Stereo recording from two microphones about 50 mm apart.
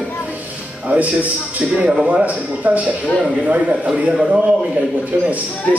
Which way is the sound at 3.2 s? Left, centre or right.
Centre.